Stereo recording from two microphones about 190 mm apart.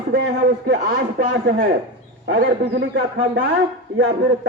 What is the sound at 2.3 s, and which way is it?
A man's voice, 55° right (ahead or behind).